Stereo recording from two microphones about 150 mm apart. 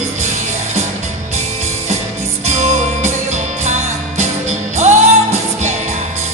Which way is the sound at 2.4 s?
50° right (ahead or behind).